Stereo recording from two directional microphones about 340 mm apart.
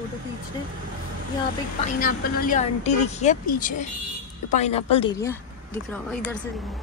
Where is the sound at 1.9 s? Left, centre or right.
Left.